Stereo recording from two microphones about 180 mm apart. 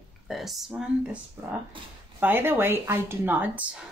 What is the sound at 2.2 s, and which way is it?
Speech, 10° right (ahead or behind).